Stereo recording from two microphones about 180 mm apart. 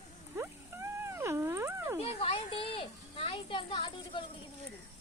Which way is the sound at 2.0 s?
35° left (ahead or behind).